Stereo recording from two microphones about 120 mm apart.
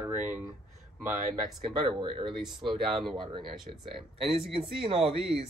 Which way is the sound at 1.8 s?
45° right (ahead or behind).